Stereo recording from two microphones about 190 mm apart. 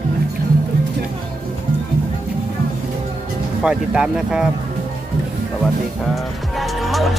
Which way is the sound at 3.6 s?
5° right (ahead or behind).